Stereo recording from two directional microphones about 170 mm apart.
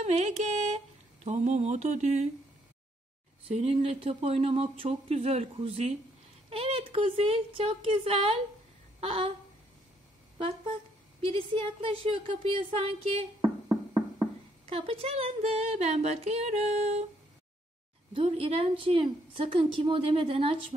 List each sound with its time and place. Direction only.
0.0 s a sound: 40° right (ahead or behind)
3.4 s speech: 35° right (ahead or behind)
11.1 s speech: 35° right (ahead or behind)
14.7 s speech: 35° right (ahead or behind)
18.1 s speech: 35° right (ahead or behind)